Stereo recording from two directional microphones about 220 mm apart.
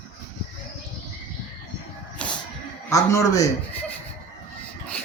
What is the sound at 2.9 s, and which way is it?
A man's voice, 15° left (ahead or behind).